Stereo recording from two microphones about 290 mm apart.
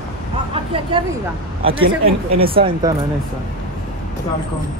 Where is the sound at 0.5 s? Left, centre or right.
Centre.